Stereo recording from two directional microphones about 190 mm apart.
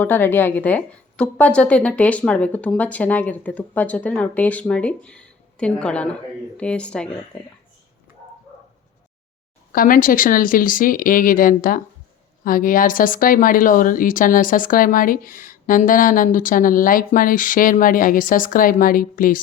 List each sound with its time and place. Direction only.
0.0 s a woman's voice: 10° left (ahead or behind)
9.7 s speech: 45° left (ahead or behind)